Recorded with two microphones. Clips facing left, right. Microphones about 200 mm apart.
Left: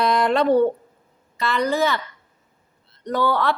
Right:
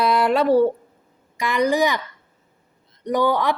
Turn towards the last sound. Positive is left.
turn(degrees=-15)  # may be behind; listen again after turning